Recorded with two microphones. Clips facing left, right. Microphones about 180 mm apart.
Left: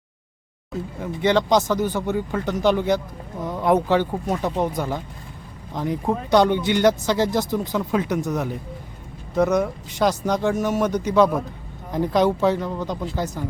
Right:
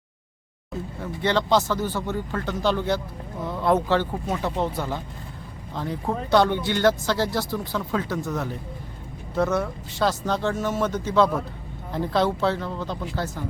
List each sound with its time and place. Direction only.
0.9 s speech: 15° left (ahead or behind)